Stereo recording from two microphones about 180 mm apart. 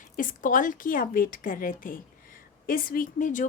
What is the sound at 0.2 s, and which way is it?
A woman's voice, 45° left (ahead or behind).